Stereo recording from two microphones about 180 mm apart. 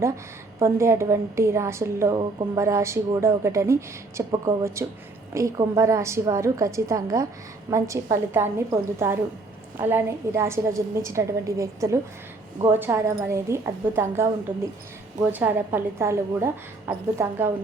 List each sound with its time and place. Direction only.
0.6 s a woman's voice: 15° right (ahead or behind)